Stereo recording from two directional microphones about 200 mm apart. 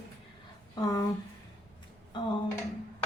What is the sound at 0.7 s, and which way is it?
Speech, 15° left (ahead or behind).